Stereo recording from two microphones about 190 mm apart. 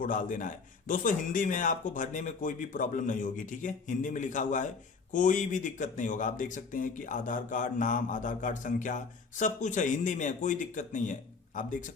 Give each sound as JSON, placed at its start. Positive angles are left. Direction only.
{"t": 0.0, "sound": "speech", "side_deg": 45}